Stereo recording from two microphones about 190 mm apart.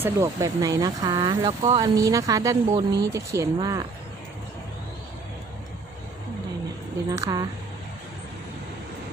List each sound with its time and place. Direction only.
0.0 s speech: 15° right (ahead or behind)
7.1 s speech: 20° right (ahead or behind)